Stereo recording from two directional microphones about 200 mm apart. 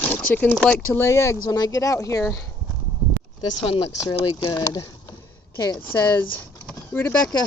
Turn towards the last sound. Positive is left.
turn(degrees=10)  # may be behind; listen again after turning